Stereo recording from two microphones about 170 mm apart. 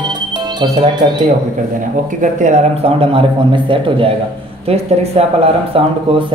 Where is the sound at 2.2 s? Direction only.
45° right (ahead or behind).